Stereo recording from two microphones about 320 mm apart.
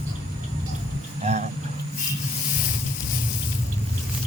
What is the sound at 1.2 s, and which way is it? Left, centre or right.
Insect, right.